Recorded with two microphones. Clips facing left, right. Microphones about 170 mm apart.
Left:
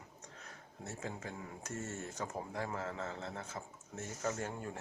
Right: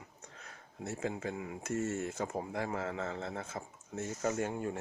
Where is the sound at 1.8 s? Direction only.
90° right.